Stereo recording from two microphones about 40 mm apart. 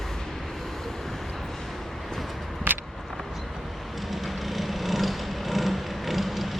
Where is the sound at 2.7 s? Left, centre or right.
Right.